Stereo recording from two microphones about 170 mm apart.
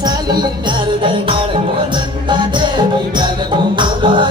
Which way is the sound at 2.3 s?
25° right (ahead or behind).